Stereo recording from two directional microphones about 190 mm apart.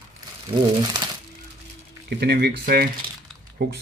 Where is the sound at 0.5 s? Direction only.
25° right (ahead or behind).